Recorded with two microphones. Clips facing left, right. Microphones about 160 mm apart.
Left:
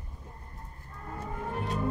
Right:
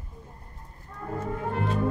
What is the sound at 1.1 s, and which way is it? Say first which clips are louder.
Music: right 6 dB; 70° right (ahead or behind).